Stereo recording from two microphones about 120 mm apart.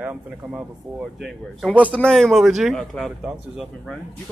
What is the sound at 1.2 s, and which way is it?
A man's voice, centre (ahead or behind).